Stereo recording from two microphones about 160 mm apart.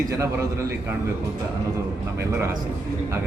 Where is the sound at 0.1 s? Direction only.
20° right (ahead or behind).